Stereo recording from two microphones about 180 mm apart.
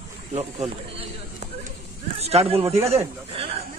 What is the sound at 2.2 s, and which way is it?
Speech, 35° right (ahead or behind).